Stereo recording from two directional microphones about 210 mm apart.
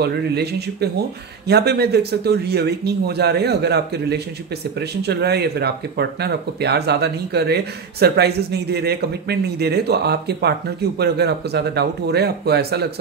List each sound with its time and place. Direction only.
0.0 s speech: 50° right (ahead or behind)